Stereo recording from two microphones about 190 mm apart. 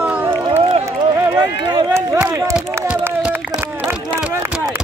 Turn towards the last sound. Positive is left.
turn(degrees=-10)  # may be behind; listen again after turning